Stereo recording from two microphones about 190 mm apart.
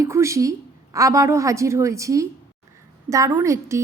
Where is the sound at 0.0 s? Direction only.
15° right (ahead or behind).